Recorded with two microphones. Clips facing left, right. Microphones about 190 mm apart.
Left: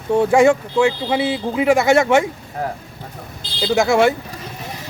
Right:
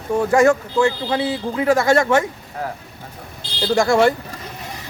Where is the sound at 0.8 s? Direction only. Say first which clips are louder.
Left 2 dB; 10° left (ahead or behind).